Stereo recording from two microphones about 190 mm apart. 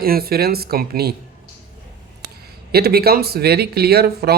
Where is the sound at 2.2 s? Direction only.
55° right (ahead or behind).